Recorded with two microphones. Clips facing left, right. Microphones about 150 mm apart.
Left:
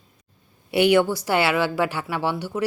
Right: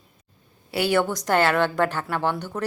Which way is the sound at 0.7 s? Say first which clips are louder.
Left 4 dB; 20° left (ahead or behind).